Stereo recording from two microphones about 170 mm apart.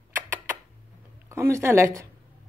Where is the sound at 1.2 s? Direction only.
15° right (ahead or behind).